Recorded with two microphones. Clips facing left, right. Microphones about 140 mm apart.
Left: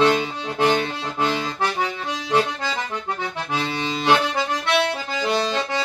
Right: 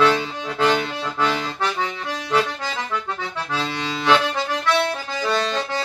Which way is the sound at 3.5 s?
20° left (ahead or behind).